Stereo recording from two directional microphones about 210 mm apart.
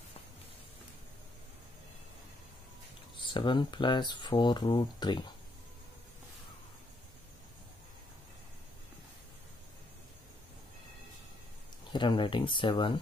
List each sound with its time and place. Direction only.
3.3 s speech: 20° left (ahead or behind)
11.9 s speech: 20° left (ahead or behind)